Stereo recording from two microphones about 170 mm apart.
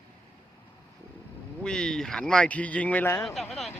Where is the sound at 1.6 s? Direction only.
5° left (ahead or behind).